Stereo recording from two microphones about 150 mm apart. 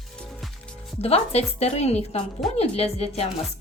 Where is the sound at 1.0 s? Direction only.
45° left (ahead or behind).